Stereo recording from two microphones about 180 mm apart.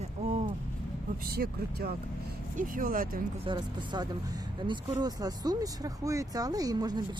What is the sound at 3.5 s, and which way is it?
Speech, 25° right (ahead or behind).